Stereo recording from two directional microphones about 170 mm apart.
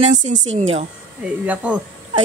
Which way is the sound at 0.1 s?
45° right (ahead or behind).